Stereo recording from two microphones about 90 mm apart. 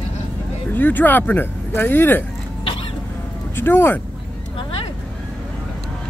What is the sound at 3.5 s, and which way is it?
Speech, 25° left (ahead or behind).